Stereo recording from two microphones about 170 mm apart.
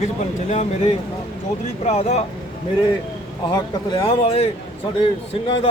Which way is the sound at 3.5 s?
25° left (ahead or behind).